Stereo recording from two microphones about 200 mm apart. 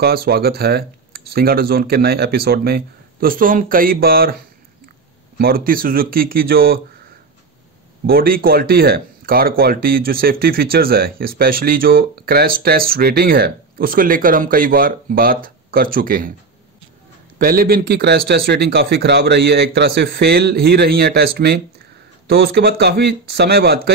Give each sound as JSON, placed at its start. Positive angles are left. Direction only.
{"t": 0.0, "sound": "speech", "side_deg": -50}
{"t": 5.4, "sound": "speech", "side_deg": -45}
{"t": 8.1, "sound": "speech", "side_deg": -50}
{"t": 17.4, "sound": "speech", "side_deg": -45}